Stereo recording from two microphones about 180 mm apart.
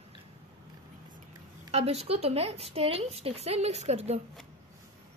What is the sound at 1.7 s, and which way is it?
A woman's voice, 35° right (ahead or behind).